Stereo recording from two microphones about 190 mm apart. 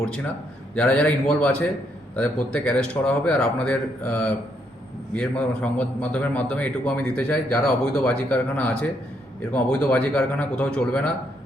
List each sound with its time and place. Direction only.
0.8 s a man's voice: 5° left (ahead or behind)